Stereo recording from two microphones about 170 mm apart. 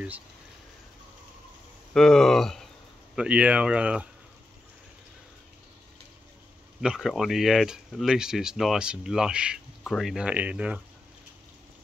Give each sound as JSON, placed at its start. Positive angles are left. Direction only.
{"t": 2.0, "sound": "speech", "side_deg": 5}
{"t": 6.8, "sound": "speech", "side_deg": -5}